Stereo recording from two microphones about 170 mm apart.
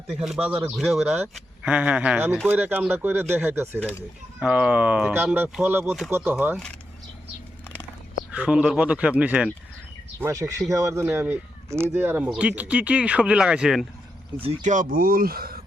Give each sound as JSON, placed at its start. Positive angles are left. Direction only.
{"t": 0.2, "sound": "speech", "side_deg": -5}
{"t": 8.3, "sound": "speech", "side_deg": -5}
{"t": 14.3, "sound": "speech", "side_deg": -40}